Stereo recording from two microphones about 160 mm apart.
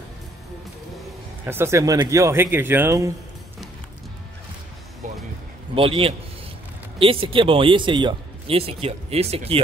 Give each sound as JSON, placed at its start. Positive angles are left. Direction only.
{"t": 1.4, "sound": "speech", "side_deg": -15}
{"t": 5.8, "sound": "speech", "side_deg": -35}